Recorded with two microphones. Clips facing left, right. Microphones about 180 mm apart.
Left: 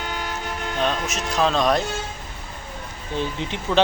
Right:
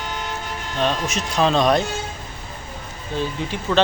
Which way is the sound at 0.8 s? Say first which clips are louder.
Right 3 dB; centre (ahead or behind).